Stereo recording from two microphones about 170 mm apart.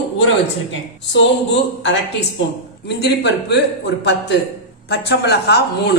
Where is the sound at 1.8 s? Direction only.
90° left.